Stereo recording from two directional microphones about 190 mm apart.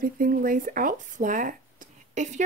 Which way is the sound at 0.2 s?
45° right (ahead or behind).